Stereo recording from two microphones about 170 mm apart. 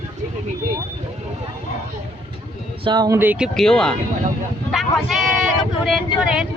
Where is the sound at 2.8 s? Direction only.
25° right (ahead or behind).